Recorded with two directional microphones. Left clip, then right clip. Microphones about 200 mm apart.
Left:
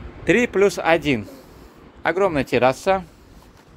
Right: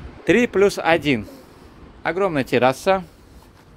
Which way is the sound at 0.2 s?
15° right (ahead or behind).